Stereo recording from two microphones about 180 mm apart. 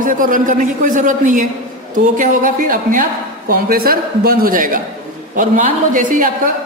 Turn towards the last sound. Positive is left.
turn(degrees=-45)  # may be behind; listen again after turning